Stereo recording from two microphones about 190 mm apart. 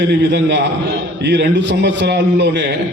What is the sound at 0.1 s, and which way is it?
A man's voice, 65° right (ahead or behind).